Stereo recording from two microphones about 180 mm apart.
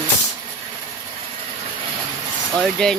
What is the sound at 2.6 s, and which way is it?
Speech, 5° left (ahead or behind).